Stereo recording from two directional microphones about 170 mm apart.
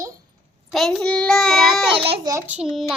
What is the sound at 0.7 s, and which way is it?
A child's voice, centre (ahead or behind).